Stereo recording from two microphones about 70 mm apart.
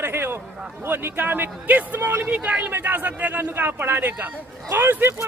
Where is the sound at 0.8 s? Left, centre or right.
Right.